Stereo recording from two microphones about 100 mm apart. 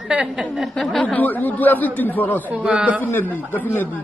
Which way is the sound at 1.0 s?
15° left (ahead or behind).